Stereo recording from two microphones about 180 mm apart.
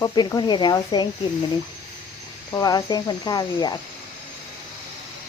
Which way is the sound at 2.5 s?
20° left (ahead or behind).